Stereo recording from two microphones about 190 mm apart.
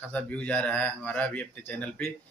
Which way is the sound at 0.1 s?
5° left (ahead or behind).